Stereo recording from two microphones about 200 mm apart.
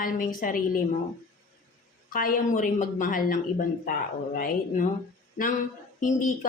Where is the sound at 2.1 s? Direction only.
45° left (ahead or behind).